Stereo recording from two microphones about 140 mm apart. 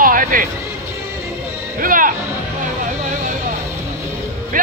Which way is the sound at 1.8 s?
75° right (ahead or behind).